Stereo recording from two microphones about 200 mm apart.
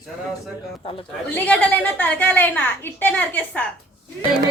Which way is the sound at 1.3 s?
10° left (ahead or behind).